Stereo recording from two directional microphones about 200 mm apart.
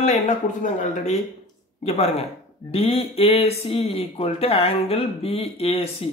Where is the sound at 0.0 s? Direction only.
35° left (ahead or behind).